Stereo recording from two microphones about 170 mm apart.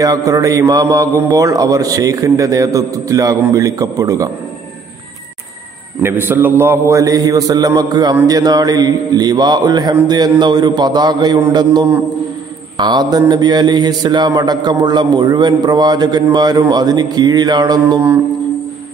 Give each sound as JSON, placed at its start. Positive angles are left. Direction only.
{"t": 0.0, "sound": "a man's voice", "side_deg": -20}
{"t": 6.0, "sound": "a man's voice", "side_deg": -15}